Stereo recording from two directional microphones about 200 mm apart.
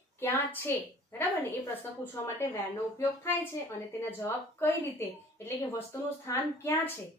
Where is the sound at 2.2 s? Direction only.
10° left (ahead or behind).